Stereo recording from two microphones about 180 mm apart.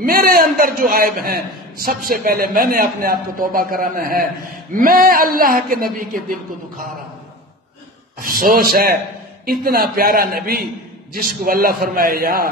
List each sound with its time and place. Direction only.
0.0 s a man's voice: 55° right (ahead or behind)
8.2 s a man's voice: 55° right (ahead or behind)